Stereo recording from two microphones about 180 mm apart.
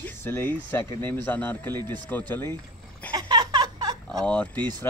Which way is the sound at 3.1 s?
25° right (ahead or behind).